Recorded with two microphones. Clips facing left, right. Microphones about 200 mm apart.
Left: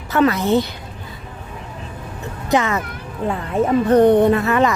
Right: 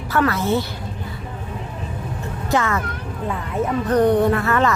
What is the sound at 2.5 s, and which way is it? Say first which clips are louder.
Speech: left 3 dB; 20° left (ahead or behind).